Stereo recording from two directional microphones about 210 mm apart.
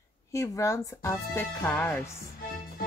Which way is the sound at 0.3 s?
15° left (ahead or behind).